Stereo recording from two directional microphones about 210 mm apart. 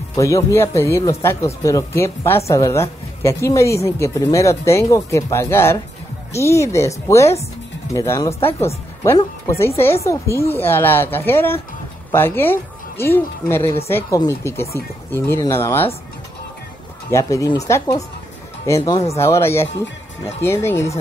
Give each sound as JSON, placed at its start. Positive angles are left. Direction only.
{"t": 0.1, "sound": "a woman's voice", "side_deg": 15}
{"t": 17.1, "sound": "a woman's voice", "side_deg": 15}
{"t": 19.1, "sound": "a woman's voice", "side_deg": 10}